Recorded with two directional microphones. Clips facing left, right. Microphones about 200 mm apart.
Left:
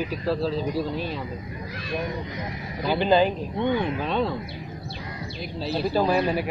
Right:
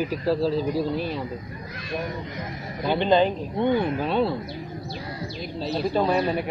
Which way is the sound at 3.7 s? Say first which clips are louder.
Right 2 dB; 40° right (ahead or behind).